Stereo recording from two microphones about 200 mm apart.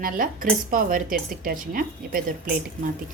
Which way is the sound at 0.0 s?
45° right (ahead or behind).